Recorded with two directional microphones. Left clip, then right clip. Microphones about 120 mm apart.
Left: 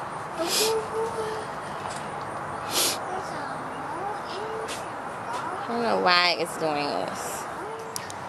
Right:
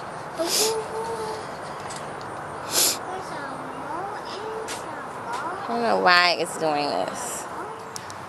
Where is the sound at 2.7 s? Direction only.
10° right (ahead or behind).